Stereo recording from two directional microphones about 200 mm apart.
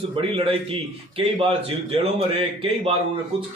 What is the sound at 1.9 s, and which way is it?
A man's voice, 30° right (ahead or behind).